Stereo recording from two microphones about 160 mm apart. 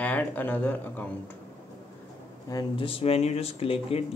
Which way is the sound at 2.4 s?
30° left (ahead or behind).